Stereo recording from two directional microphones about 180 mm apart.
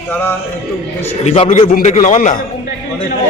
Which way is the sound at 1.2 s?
35° left (ahead or behind).